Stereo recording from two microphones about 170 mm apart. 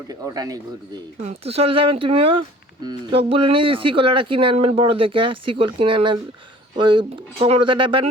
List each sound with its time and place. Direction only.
0.1 s speech: 20° right (ahead or behind)
1.2 s speech: 35° right (ahead or behind)